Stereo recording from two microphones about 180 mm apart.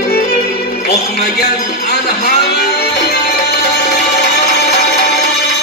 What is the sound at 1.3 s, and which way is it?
Music, 65° left (ahead or behind).